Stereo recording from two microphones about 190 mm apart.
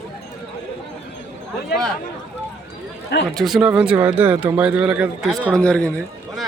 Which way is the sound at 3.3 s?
Centre (ahead or behind).